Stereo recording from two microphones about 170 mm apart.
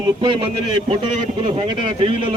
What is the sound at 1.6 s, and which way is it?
Speech, 30° right (ahead or behind).